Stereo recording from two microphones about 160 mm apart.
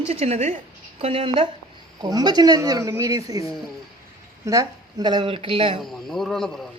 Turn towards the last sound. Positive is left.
turn(degrees=5)  # may be behind; listen again after turning